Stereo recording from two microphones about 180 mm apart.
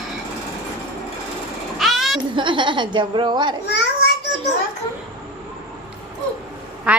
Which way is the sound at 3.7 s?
70° left (ahead or behind).